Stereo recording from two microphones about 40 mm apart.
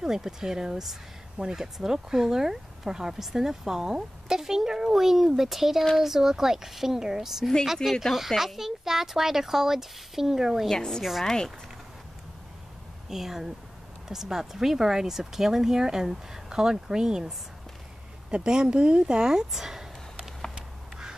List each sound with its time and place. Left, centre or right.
0.0 s speech: centre
7.9 s a woman's voice: centre
8.4 s speech: centre
10.7 s a woman's voice: centre
13.1 s speech: centre
18.5 s speech: centre
19.5 s a sound: centre